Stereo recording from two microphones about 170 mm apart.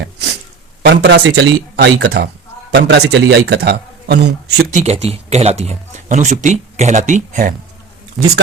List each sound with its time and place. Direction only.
0.0 s a sound: 90° right
0.8 s a man's voice: 75° right (ahead or behind)
4.7 s speech: 40° right (ahead or behind)
8.2 s a man's voice: centre (ahead or behind)